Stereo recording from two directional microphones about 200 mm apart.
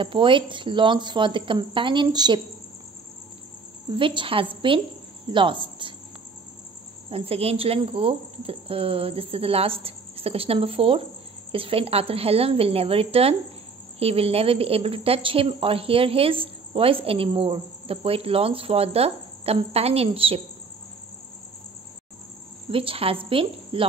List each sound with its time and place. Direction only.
0.0 s a woman's voice: 25° right (ahead or behind)
3.9 s a woman's voice: 25° right (ahead or behind)
7.1 s a woman's voice: 30° right (ahead or behind)
22.7 s a woman's voice: 25° right (ahead or behind)